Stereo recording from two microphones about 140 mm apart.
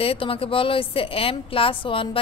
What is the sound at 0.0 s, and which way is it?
A woman's voice, 40° left (ahead or behind).